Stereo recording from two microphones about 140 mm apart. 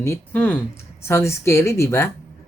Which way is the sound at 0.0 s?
15° left (ahead or behind).